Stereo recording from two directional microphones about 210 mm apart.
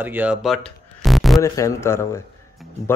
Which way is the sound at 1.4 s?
15° left (ahead or behind).